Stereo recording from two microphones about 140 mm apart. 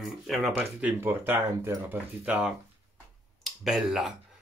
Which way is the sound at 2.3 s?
5° right (ahead or behind).